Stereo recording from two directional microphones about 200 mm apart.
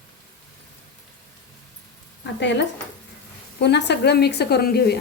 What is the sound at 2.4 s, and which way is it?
A woman's voice, 65° left (ahead or behind).